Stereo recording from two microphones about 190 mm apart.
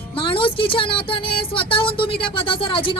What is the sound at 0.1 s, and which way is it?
Speech, 25° left (ahead or behind).